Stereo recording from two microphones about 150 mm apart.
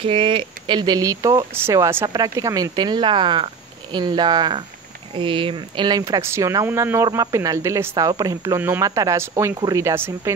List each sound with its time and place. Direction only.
0.0 s speech: 35° right (ahead or behind); by 10.3 s 15° right (ahead or behind)